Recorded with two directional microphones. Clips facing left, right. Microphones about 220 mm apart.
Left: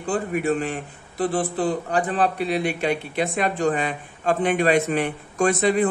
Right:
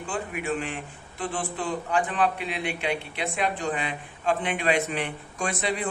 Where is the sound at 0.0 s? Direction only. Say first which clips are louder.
Left 8 dB; 40° left (ahead or behind).